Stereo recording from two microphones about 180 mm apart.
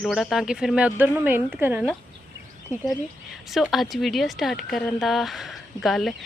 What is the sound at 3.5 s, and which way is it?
Speech, centre (ahead or behind).